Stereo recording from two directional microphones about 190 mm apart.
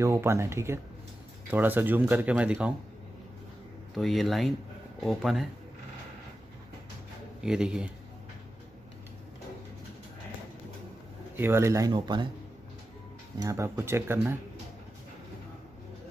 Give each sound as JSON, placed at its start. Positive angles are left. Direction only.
{"t": 0.0, "sound": "speech", "side_deg": -15}
{"t": 3.9, "sound": "speech", "side_deg": 0}
{"t": 7.4, "sound": "speech", "side_deg": -5}
{"t": 11.3, "sound": "speech", "side_deg": -10}
{"t": 13.4, "sound": "speech", "side_deg": -15}